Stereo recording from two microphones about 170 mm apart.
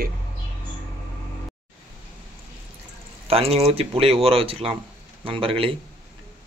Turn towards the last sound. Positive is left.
turn(degrees=-30)  # may be behind; listen again after turning